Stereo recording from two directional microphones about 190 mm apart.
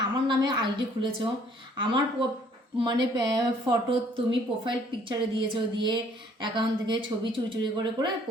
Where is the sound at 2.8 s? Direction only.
20° right (ahead or behind).